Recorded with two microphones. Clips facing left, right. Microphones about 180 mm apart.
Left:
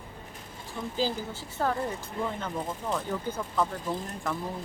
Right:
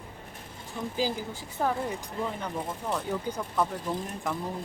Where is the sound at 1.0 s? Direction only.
10° right (ahead or behind).